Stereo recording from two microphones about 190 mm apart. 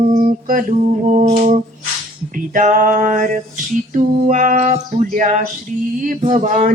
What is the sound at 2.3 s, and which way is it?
Mantra, 45° right (ahead or behind).